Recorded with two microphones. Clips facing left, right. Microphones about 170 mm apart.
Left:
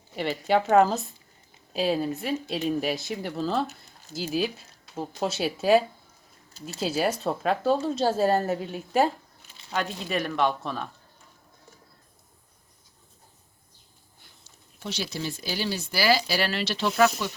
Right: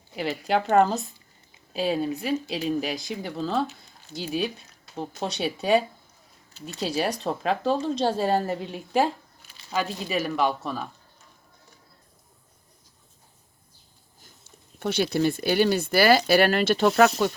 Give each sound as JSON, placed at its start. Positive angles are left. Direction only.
{"t": 0.2, "sound": "speech", "side_deg": 0}
{"t": 14.2, "sound": "speech", "side_deg": -50}